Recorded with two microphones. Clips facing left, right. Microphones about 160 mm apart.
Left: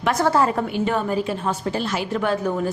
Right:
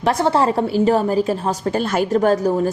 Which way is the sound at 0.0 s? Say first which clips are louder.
Right 2 dB; 30° right (ahead or behind).